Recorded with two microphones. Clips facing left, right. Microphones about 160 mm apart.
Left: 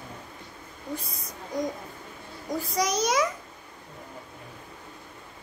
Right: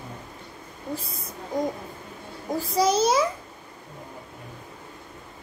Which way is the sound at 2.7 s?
30° right (ahead or behind).